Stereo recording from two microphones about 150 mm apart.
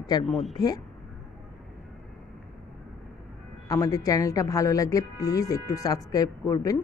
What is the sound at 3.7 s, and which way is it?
Speech, 20° left (ahead or behind).